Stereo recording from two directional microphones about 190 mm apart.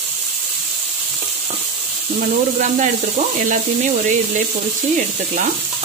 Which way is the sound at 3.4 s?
40° right (ahead or behind).